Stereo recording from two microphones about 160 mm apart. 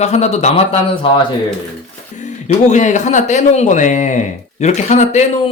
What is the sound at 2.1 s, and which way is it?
A man's voice, 50° left (ahead or behind).